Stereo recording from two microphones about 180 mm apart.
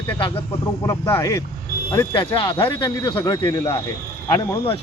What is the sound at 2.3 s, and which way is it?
Speech, 30° left (ahead or behind).